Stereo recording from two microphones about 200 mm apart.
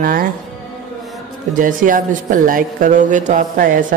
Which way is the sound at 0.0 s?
45° right (ahead or behind).